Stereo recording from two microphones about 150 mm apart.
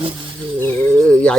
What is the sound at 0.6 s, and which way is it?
Speech, 10° left (ahead or behind).